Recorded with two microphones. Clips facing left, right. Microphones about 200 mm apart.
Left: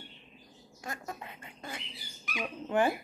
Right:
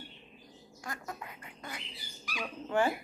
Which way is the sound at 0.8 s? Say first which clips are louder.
Left 1 dB; 25° left (ahead or behind).